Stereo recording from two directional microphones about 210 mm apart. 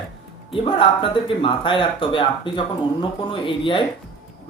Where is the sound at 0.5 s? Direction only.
25° left (ahead or behind).